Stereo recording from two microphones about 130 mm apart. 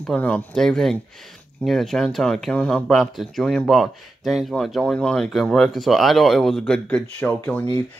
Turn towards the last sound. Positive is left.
turn(degrees=10)  # may be behind; listen again after turning